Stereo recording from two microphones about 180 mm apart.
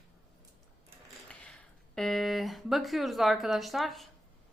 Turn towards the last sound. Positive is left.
turn(degrees=0)  # may be behind; listen again after turning